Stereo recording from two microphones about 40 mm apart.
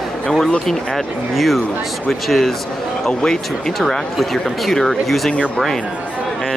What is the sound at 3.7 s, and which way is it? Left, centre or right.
Speech, centre.